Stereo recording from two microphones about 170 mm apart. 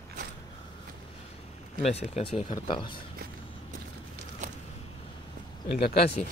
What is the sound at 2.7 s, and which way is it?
Speech, 30° left (ahead or behind).